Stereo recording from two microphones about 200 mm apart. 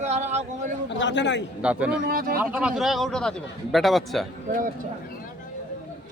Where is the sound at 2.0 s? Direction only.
45° right (ahead or behind).